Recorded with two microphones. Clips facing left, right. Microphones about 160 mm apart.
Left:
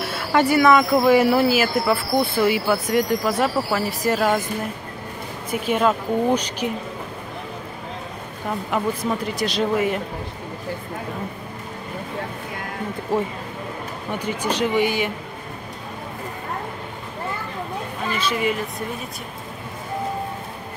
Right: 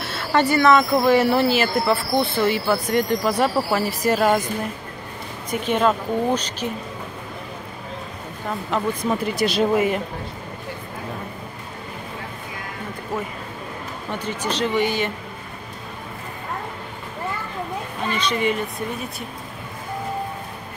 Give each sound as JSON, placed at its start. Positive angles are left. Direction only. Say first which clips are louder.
{"t": 0.0, "sound": "speech", "louder": "left 1 dB", "side_deg": 10}
{"t": 5.5, "sound": "speech", "louder": "even", "side_deg": 5}
{"t": 8.5, "sound": "speech", "louder": "left 1 dB", "side_deg": 10}
{"t": 9.3, "sound": "speech", "louder": "right 4 dB", "side_deg": -5}
{"t": 13.1, "sound": "speech", "louder": "left 6 dB", "side_deg": 30}
{"t": 14.1, "sound": "speech", "louder": "left 2 dB", "side_deg": 10}
{"t": 18.1, "sound": "speech", "louder": "right 1 dB", "side_deg": 5}